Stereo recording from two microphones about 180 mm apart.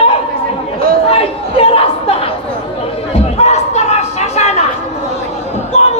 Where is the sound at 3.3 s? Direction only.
40° left (ahead or behind).